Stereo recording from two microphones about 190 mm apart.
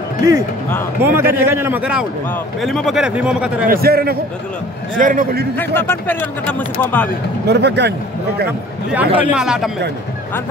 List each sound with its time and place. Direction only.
0.2 s a man's voice: 15° right (ahead or behind)
3.6 s a man's voice: 55° right (ahead or behind)
5.6 s speech: 10° left (ahead or behind)
7.4 s speech: 60° right (ahead or behind)
9.3 s speech: 5° right (ahead or behind)